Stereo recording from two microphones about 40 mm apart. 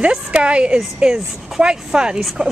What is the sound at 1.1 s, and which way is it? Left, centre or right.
Speech, centre.